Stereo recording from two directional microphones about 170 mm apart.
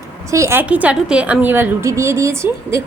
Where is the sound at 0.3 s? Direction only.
15° right (ahead or behind).